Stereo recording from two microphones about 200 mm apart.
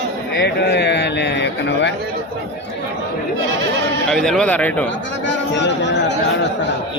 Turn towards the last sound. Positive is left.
turn(degrees=60)  # may be behind; listen again after turning